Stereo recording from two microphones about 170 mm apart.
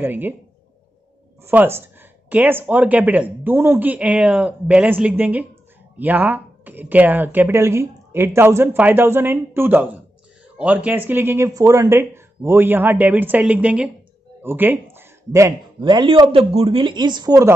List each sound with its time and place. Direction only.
0.0 s speech: 10° right (ahead or behind)
1.4 s speech: 10° right (ahead or behind)
15.8 s speech: 30° right (ahead or behind)